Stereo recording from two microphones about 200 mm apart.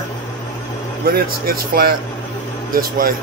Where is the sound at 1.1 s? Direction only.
50° right (ahead or behind).